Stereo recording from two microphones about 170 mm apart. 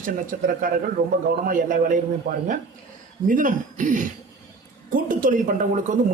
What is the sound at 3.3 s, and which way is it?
A man's voice, 50° right (ahead or behind).